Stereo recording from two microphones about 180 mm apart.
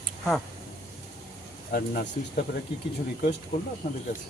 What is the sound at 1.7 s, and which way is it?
Speech, 60° left (ahead or behind).